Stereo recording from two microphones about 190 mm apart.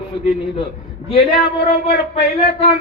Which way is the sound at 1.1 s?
55° left (ahead or behind).